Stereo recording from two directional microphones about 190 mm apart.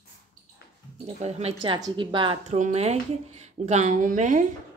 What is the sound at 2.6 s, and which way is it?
A woman's voice, 35° right (ahead or behind).